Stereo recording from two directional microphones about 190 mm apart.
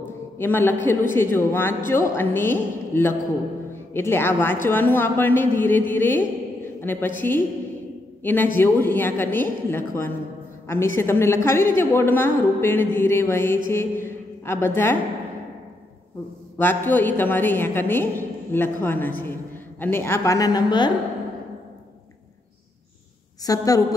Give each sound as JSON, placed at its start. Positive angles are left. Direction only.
{"t": 0.4, "sound": "a woman's voice", "side_deg": 10}
{"t": 16.5, "sound": "a woman's voice", "side_deg": 10}
{"t": 23.4, "sound": "a woman's voice", "side_deg": 20}